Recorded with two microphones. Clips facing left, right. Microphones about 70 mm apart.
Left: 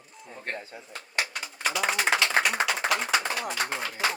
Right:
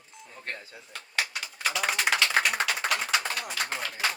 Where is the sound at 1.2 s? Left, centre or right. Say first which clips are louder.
Left 1 dB; centre.